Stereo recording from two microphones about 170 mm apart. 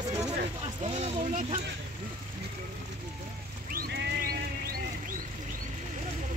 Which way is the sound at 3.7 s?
75° right (ahead or behind).